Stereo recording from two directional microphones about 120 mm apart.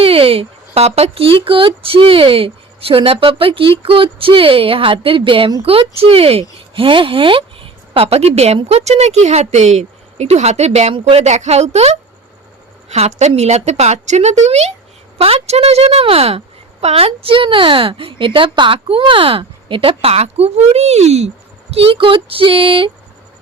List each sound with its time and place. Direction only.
0.0 s a woman's voice: 50° right (ahead or behind)
21.7 s a woman's voice: 50° right (ahead or behind)